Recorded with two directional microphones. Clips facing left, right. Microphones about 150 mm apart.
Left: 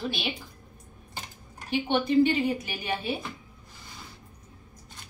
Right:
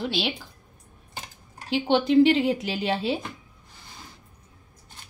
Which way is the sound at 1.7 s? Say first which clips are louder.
Right 4 dB; 90° right.